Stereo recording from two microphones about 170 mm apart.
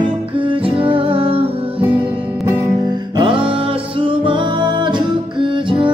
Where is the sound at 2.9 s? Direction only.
30° right (ahead or behind).